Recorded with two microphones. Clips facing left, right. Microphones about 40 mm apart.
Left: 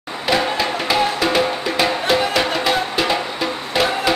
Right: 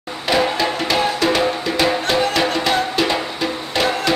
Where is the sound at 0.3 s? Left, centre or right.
Centre.